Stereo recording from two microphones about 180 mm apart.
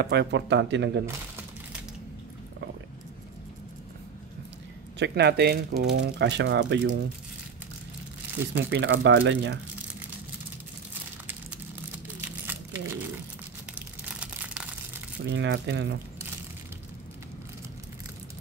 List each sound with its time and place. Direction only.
0.0 s speech: 70° right (ahead or behind)
4.9 s speech: 70° right (ahead or behind)
8.7 s speech: 85° right
12.3 s crumpling: 10° right (ahead or behind)
15.3 s speech: 80° right